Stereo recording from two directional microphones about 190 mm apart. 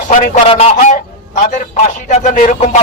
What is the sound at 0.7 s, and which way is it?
Fowl, 45° left (ahead or behind).